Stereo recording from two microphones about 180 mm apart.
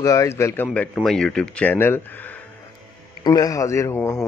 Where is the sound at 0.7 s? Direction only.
5° left (ahead or behind).